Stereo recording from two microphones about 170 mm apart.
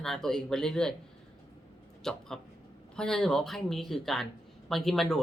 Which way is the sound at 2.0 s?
5° left (ahead or behind).